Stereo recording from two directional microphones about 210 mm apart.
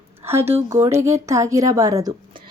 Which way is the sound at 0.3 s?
10° right (ahead or behind).